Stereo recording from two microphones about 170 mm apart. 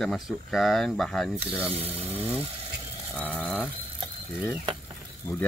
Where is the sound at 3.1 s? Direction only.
5° left (ahead or behind).